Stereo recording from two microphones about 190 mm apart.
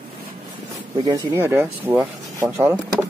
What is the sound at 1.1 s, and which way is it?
Speech, 20° right (ahead or behind).